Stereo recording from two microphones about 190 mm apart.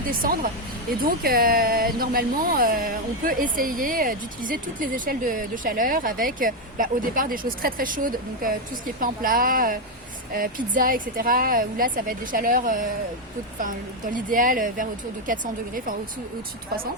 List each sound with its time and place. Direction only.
0.1 s speech: 50° right (ahead or behind)